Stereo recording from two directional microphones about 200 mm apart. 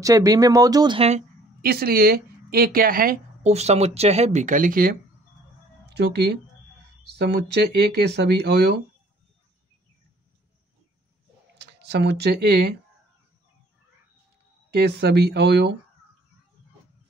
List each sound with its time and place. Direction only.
0.0 s speech: 15° right (ahead or behind)
1.6 s speech: 50° right (ahead or behind)
3.5 s speech: 30° right (ahead or behind)
5.9 s speech: 55° right (ahead or behind)
11.5 s speech: 55° right (ahead or behind)
14.7 s speech: 55° right (ahead or behind)